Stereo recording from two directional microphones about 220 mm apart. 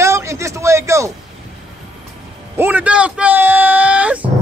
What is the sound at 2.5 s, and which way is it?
A man's voice, 10° right (ahead or behind).